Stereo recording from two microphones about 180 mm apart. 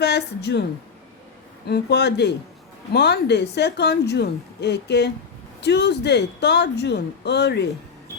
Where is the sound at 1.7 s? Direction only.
70° left (ahead or behind).